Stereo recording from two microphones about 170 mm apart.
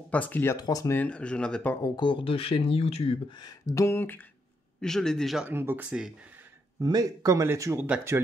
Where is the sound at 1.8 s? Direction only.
25° left (ahead or behind); by 5.5 s centre (ahead or behind).